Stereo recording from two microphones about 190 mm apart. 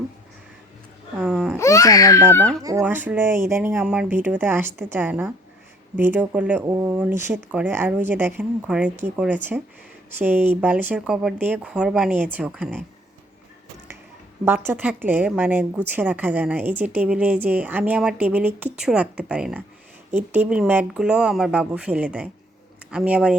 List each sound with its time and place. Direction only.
1.2 s speech: 5° right (ahead or behind)
1.5 s speech: 15° left (ahead or behind)
2.3 s speech: 5° left (ahead or behind)
2.6 s a woman's voice: 15° right (ahead or behind)
14.4 s a woman's voice: 10° right (ahead or behind)